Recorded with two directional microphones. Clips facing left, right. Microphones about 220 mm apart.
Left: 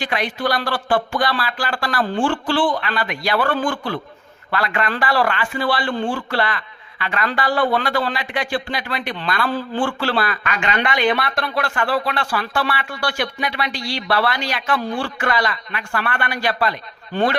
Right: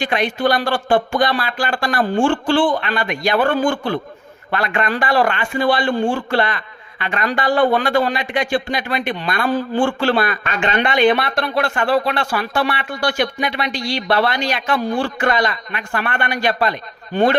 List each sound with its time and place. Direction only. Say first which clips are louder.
0.0 s speech: right 4 dB; 25° right (ahead or behind)